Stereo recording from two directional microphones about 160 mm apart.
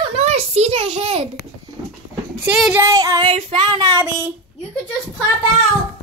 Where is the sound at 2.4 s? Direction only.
5° right (ahead or behind).